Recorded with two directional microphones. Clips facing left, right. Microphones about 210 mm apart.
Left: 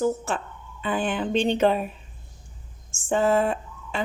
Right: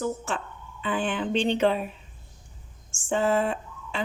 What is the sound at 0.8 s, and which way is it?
Speech, 40° left (ahead or behind).